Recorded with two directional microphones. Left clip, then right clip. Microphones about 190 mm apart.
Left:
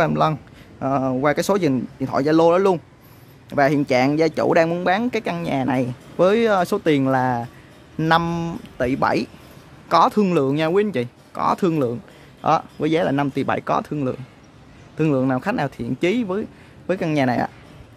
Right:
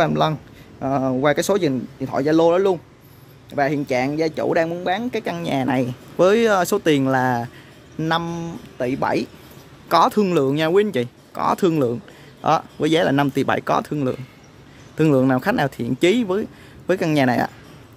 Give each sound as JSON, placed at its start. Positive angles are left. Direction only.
{"t": 0.0, "sound": "speech", "side_deg": 5}
{"t": 3.4, "sound": "speech", "side_deg": 25}
{"t": 5.2, "sound": "speech", "side_deg": 5}
{"t": 8.0, "sound": "speech", "side_deg": 15}
{"t": 9.8, "sound": "speech", "side_deg": 5}
{"t": 15.0, "sound": "speech", "side_deg": -5}